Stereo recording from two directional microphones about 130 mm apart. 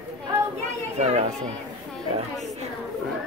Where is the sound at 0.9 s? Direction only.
55° right (ahead or behind).